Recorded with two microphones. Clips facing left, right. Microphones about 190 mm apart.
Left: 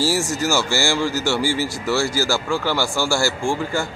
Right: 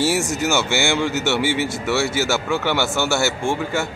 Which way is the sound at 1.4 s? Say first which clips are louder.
Right 1 dB; 65° right (ahead or behind).